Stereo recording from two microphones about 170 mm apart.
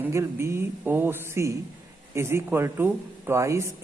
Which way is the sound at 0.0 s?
15° right (ahead or behind).